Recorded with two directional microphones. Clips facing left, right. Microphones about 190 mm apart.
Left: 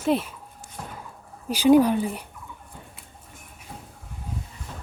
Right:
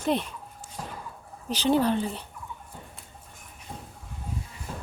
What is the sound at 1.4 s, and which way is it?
Speech, 10° left (ahead or behind).